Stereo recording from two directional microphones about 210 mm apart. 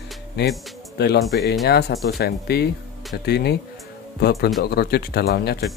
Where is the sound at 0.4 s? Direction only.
55° left (ahead or behind).